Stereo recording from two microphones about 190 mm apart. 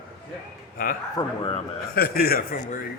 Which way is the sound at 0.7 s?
50° left (ahead or behind).